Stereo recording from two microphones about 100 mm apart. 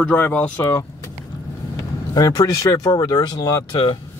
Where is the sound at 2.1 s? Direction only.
40° left (ahead or behind).